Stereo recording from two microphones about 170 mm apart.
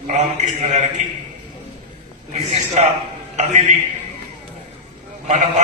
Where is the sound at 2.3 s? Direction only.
40° right (ahead or behind).